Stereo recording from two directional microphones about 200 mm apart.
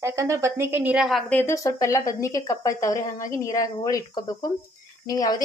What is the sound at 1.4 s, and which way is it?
Speech, 15° left (ahead or behind).